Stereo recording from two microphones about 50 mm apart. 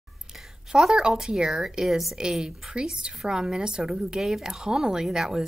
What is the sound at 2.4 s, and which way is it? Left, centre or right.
Speech, centre.